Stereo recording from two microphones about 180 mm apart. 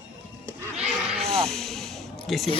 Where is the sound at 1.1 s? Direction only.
35° right (ahead or behind).